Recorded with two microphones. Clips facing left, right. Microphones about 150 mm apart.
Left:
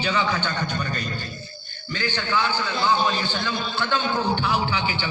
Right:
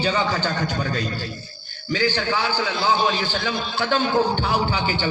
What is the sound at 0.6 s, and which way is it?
Speech, 90° right.